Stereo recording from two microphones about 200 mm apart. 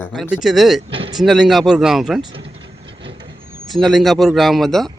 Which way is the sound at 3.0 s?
25° right (ahead or behind).